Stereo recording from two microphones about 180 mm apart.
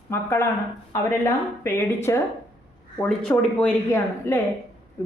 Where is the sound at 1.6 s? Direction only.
15° left (ahead or behind).